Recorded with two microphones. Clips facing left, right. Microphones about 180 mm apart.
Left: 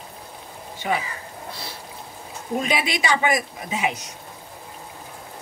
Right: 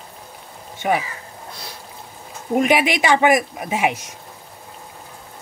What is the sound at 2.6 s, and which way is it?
A woman's voice, 60° right (ahead or behind).